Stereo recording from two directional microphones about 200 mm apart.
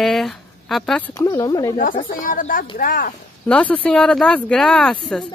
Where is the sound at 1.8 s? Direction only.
40° left (ahead or behind).